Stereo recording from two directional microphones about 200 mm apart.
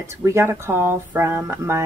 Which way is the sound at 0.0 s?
15° right (ahead or behind).